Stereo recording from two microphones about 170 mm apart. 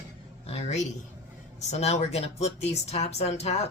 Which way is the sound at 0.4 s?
40° left (ahead or behind).